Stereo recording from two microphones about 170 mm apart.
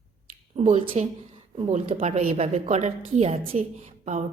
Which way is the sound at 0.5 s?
35° right (ahead or behind).